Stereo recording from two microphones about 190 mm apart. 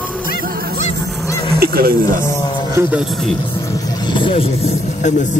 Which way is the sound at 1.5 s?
50° right (ahead or behind).